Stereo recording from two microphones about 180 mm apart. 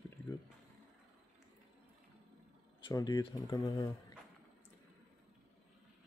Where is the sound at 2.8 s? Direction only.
20° left (ahead or behind).